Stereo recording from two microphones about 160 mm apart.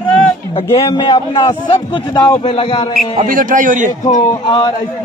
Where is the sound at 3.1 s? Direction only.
55° right (ahead or behind).